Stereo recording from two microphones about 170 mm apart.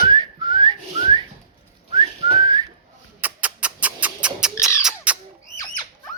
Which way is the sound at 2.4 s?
25° right (ahead or behind).